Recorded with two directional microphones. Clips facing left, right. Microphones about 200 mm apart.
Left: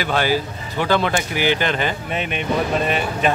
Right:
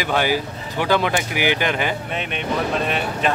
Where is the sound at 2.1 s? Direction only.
Centre (ahead or behind).